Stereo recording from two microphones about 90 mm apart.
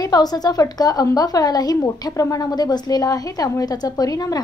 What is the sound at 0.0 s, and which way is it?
A woman's voice, 45° left (ahead or behind).